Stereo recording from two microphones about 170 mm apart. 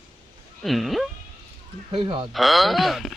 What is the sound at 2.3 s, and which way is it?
Speech, centre (ahead or behind).